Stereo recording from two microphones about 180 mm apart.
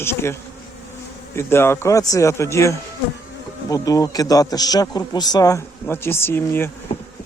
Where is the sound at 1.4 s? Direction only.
15° left (ahead or behind).